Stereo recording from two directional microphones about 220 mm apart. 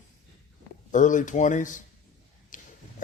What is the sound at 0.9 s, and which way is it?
A man's voice, 35° left (ahead or behind).